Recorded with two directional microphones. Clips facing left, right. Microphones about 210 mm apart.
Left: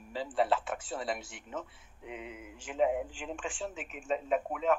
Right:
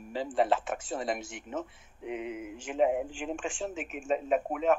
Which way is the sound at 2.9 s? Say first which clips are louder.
Right 3 dB; 45° right (ahead or behind).